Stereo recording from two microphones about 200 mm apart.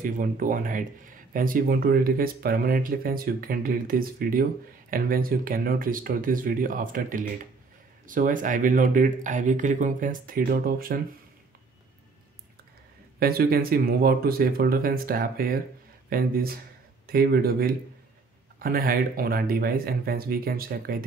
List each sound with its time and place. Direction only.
0.0 s speech: 45° right (ahead or behind)
13.2 s speech: 50° right (ahead or behind)